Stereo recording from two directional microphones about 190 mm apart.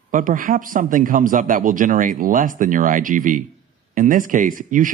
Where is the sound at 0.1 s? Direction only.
45° right (ahead or behind).